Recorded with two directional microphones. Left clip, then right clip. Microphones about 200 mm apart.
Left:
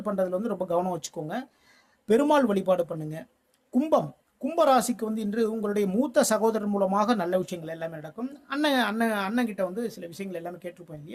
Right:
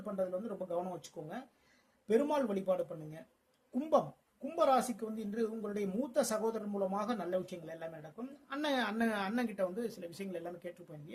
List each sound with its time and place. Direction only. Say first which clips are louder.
0.0 s speech: left 10 dB; 40° left (ahead or behind)